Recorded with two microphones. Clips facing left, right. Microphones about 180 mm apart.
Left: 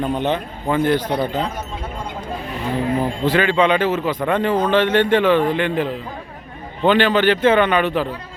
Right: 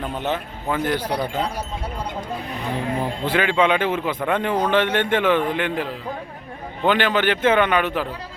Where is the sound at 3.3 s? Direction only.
10° right (ahead or behind).